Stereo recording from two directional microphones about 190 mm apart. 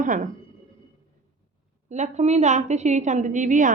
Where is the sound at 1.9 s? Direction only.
35° right (ahead or behind).